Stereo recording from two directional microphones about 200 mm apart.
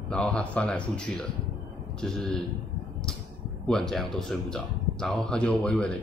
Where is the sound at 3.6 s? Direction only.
5° left (ahead or behind).